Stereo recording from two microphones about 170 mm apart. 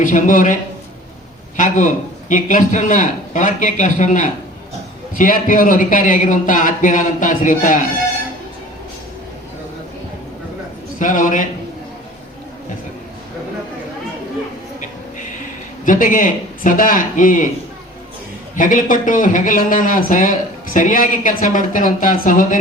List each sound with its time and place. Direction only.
0.0 s a man's voice: 50° left (ahead or behind)
11.0 s a man's voice: 50° left (ahead or behind)
15.9 s a man's voice: 55° left (ahead or behind)
18.5 s a man's voice: 50° left (ahead or behind)